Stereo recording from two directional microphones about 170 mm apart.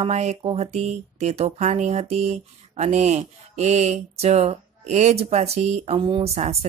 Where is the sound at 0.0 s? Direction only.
40° right (ahead or behind).